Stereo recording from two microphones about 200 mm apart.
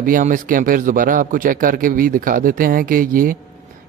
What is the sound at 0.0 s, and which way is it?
A man's voice, 40° right (ahead or behind).